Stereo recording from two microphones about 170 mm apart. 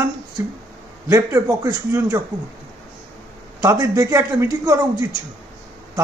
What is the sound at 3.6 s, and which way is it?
A man's voice, 20° right (ahead or behind).